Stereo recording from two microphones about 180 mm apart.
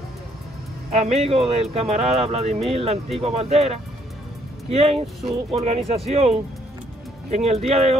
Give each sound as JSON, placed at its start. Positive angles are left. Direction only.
{"t": 0.9, "sound": "speech", "side_deg": -35}